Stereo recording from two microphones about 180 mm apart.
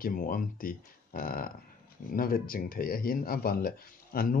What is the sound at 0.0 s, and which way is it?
Speech, 50° left (ahead or behind).